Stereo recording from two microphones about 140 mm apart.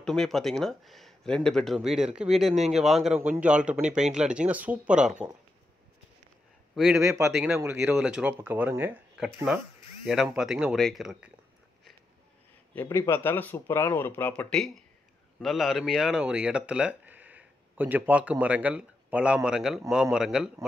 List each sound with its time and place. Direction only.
0.0 s speech: 5° left (ahead or behind)
6.7 s a man's voice: 5° right (ahead or behind)
7.0 s speech: 20° right (ahead or behind)
8.0 s speech: 5° right (ahead or behind)
9.1 s speech: 5° right (ahead or behind)
12.7 s speech: 15° left (ahead or behind); by 20.5 s 5° right (ahead or behind)